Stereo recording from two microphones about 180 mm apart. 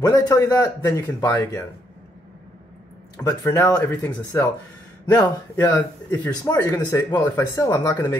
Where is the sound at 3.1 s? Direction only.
15° left (ahead or behind).